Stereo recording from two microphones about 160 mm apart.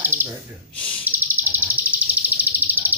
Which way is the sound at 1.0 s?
10° right (ahead or behind).